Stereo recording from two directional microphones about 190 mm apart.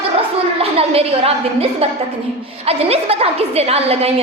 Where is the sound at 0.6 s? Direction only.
30° right (ahead or behind).